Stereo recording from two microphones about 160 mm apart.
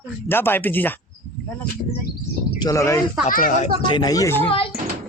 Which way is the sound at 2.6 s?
20° left (ahead or behind).